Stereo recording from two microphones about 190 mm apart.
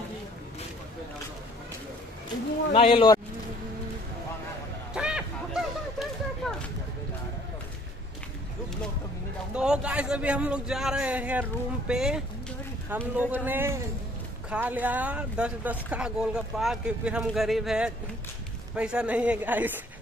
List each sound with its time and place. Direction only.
2.7 s speech: 30° left (ahead or behind)
4.9 s honk: 5° right (ahead or behind)
9.5 s a woman's voice: 5° right (ahead or behind)